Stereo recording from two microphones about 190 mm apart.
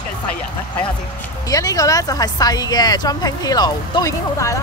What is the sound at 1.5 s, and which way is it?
Speech, 20° left (ahead or behind).